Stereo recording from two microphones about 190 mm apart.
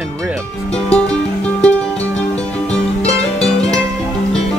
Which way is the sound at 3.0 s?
35° left (ahead or behind).